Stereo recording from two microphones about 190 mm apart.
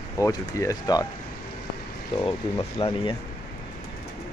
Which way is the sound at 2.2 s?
25° left (ahead or behind).